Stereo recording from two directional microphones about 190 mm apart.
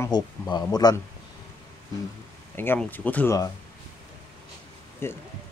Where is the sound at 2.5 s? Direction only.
10° left (ahead or behind).